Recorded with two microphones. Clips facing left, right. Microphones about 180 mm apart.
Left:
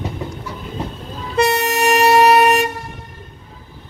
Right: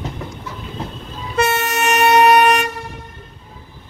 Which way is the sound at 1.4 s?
35° left (ahead or behind).